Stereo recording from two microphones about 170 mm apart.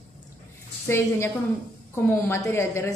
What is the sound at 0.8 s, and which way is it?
Speech, 15° left (ahead or behind).